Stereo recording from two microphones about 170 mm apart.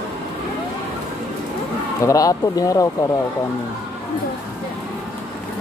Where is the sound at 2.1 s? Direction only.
20° left (ahead or behind).